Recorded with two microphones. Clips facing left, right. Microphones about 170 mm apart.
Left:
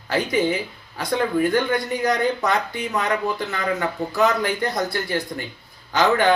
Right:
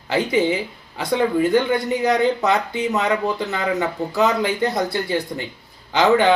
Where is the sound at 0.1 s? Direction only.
20° right (ahead or behind).